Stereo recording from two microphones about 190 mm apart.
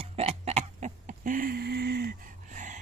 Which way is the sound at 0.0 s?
35° right (ahead or behind).